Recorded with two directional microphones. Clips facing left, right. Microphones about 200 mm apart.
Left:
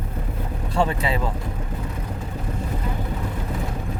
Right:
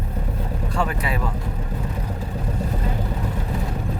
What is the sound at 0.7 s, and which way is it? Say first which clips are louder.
Speech: left 3 dB; 25° left (ahead or behind).